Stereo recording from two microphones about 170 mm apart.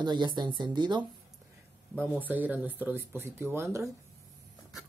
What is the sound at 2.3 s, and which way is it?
Speech, 10° right (ahead or behind).